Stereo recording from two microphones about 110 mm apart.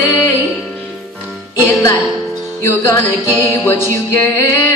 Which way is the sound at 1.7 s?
20° left (ahead or behind).